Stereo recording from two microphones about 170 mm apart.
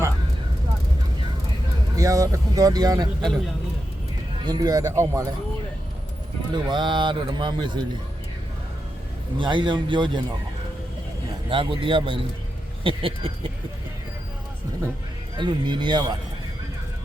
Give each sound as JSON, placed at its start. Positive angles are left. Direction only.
{"t": 2.0, "sound": "a man's voice", "side_deg": -20}
{"t": 4.4, "sound": "a man's voice", "side_deg": -25}
{"t": 6.5, "sound": "a man's voice", "side_deg": -25}
{"t": 9.4, "sound": "a man's voice", "side_deg": -30}
{"t": 11.4, "sound": "a man's voice", "side_deg": -30}
{"t": 15.4, "sound": "a man's voice", "side_deg": -25}